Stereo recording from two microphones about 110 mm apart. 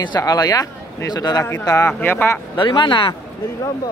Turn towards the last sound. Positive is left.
turn(degrees=45)  # may be behind; listen again after turning